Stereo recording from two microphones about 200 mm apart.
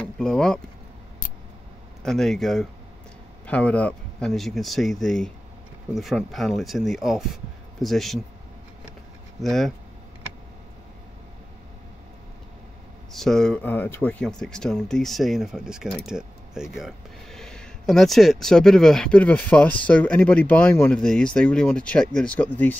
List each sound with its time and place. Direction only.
0.2 s speech: 5° left (ahead or behind)
2.0 s speech: centre (ahead or behind)
9.4 s speech: centre (ahead or behind)
13.1 s speech: centre (ahead or behind)